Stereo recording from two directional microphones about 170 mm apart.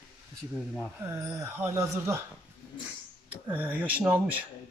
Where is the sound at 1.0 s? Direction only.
15° right (ahead or behind).